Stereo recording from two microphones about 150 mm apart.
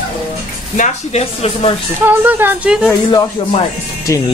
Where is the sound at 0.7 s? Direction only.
50° left (ahead or behind).